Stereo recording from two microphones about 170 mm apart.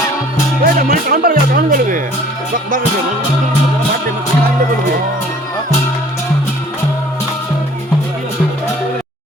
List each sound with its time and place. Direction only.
0.6 s speech: 60° right (ahead or behind)